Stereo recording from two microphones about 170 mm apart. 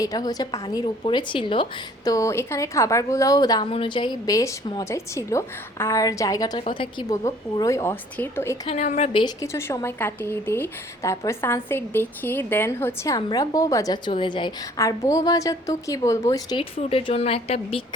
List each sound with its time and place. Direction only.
0.0 s a woman's voice: 20° left (ahead or behind)
2.0 s a woman's voice: 20° left (ahead or behind)
8.6 s a woman's voice: 40° left (ahead or behind)
9.1 s a woman's voice: 20° left (ahead or behind)